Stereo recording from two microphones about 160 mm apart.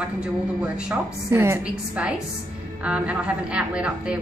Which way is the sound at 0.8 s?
15° right (ahead or behind).